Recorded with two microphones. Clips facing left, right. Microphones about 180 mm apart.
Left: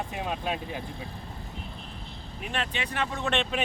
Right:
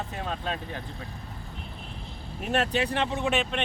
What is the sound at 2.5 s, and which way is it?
Speech, 40° right (ahead or behind).